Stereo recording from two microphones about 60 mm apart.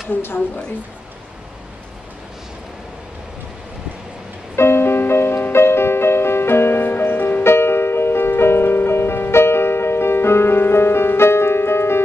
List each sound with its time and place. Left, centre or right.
0.1 s a woman's voice: left
4.6 s music: left